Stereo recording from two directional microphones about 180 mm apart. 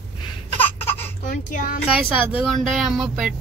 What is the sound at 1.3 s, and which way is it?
Speech, 45° left (ahead or behind).